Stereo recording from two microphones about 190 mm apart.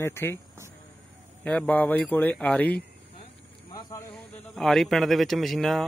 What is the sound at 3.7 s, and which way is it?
Snake, 20° left (ahead or behind).